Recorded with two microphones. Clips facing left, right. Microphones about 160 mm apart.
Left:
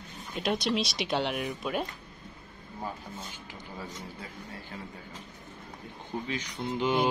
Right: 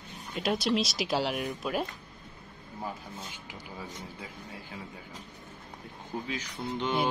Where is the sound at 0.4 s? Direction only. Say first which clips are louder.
Right 1 dB; centre (ahead or behind).